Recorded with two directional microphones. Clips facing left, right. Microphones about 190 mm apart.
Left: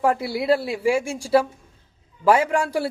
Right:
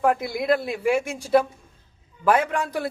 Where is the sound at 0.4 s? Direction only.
30° left (ahead or behind).